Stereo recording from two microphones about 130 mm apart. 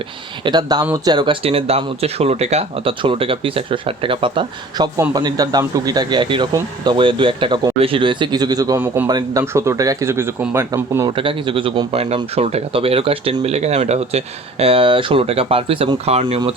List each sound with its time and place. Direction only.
0.4 s speech: 30° right (ahead or behind)
11.1 s speech: 40° right (ahead or behind)